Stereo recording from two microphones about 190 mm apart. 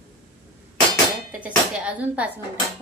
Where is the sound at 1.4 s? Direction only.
5° right (ahead or behind).